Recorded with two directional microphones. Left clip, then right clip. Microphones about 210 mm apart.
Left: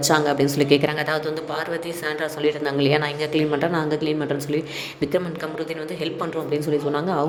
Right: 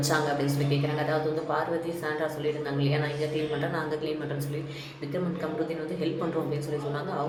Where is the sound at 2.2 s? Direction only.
40° left (ahead or behind).